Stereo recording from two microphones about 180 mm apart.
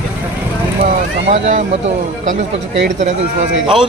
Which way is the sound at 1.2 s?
35° right (ahead or behind).